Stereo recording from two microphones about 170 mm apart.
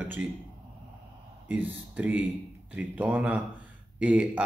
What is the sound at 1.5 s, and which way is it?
Speech, 10° right (ahead or behind).